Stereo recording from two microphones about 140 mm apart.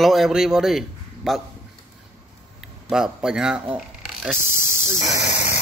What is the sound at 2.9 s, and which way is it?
Speech, 5° right (ahead or behind).